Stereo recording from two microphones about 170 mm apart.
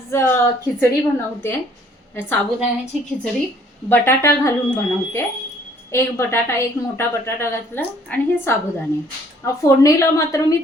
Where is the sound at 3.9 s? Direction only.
15° left (ahead or behind).